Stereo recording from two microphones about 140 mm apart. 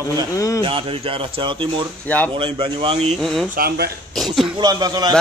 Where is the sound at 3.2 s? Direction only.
Centre (ahead or behind).